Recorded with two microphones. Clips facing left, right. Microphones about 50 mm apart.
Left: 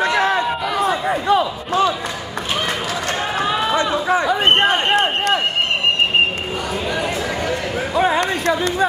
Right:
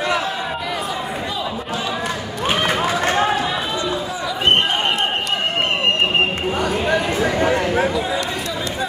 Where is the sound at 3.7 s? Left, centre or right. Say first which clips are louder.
Left 6 dB; left.